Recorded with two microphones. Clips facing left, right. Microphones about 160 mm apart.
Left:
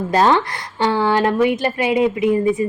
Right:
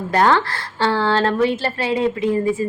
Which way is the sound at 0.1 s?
20° left (ahead or behind).